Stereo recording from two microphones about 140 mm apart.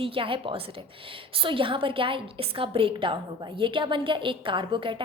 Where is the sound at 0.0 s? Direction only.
40° right (ahead or behind).